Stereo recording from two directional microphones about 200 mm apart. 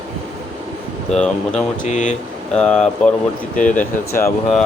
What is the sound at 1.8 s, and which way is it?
Speech, 35° left (ahead or behind).